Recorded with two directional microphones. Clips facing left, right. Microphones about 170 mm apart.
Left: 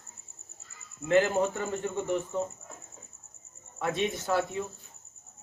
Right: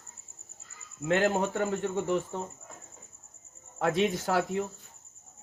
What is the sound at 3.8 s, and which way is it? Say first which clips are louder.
Speech: right 3 dB; 90° right.